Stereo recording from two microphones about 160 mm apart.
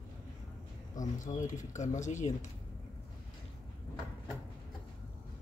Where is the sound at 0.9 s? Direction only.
50° left (ahead or behind).